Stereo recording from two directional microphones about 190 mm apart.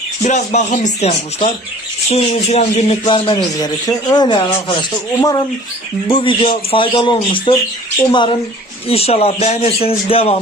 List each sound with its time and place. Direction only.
0.2 s a man's voice: 40° left (ahead or behind)
3.0 s a man's voice: 20° left (ahead or behind)
6.1 s a man's voice: 30° left (ahead or behind)